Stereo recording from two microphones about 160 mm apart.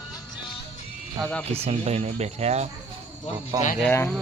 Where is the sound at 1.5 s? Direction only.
40° right (ahead or behind).